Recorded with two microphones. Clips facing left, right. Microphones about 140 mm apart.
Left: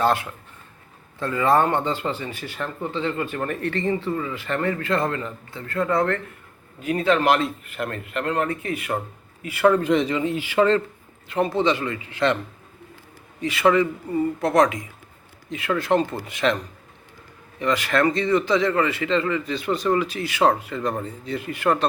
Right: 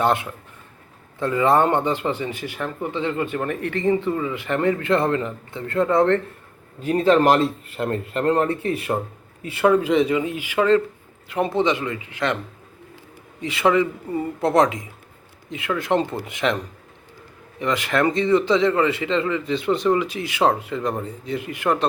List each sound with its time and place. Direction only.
0.0 s a man's voice: 20° right (ahead or behind)
6.8 s a man's voice: 35° right (ahead or behind)
9.6 s speech: 5° right (ahead or behind)
13.4 s a man's voice: 25° right (ahead or behind)
17.6 s a man's voice: 20° right (ahead or behind)